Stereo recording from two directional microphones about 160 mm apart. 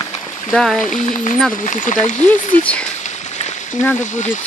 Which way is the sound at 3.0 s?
45° left (ahead or behind).